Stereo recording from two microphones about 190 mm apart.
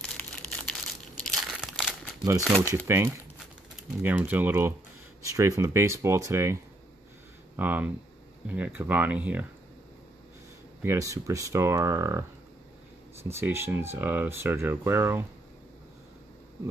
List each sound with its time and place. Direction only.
0.2 s crumpling: 5° left (ahead or behind)
2.4 s speech: 5° left (ahead or behind)
4.0 s speech: 10° right (ahead or behind)
10.8 s speech: 15° right (ahead or behind)